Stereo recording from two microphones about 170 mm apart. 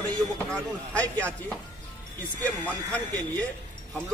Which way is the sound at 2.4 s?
10° left (ahead or behind).